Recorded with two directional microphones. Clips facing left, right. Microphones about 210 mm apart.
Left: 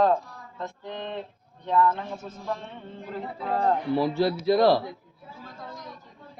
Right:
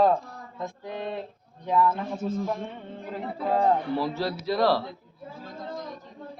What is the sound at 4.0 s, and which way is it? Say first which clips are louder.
Speech: left 5 dB; 15° left (ahead or behind).